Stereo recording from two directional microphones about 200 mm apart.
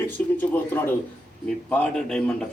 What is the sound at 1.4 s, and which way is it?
A man's voice, 5° left (ahead or behind).